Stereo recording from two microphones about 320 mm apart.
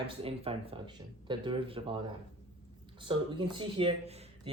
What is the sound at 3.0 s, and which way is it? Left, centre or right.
Speech, centre.